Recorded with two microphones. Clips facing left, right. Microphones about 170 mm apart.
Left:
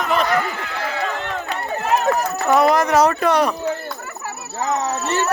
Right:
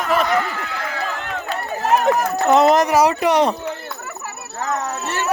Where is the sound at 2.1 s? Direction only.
20° right (ahead or behind).